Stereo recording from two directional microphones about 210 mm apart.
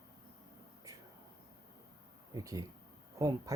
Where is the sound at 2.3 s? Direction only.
15° right (ahead or behind).